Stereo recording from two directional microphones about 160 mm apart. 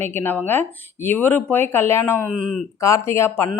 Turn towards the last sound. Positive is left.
turn(degrees=15)  # may be behind; listen again after turning